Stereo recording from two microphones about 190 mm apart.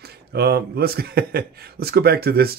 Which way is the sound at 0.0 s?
55° right (ahead or behind).